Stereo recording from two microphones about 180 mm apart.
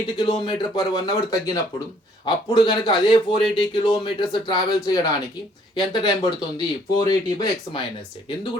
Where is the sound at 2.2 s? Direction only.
25° left (ahead or behind).